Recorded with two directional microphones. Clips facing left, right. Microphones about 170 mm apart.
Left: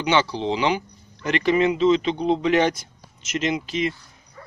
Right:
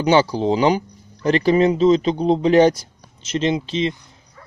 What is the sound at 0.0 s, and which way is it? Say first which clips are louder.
Speech: right 5 dB; 40° right (ahead or behind).